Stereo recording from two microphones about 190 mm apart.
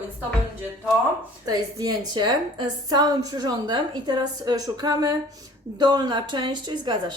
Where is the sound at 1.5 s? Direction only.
20° right (ahead or behind).